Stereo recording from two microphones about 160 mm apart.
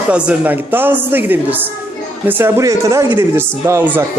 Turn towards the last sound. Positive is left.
turn(degrees=-15)  # may be behind; listen again after turning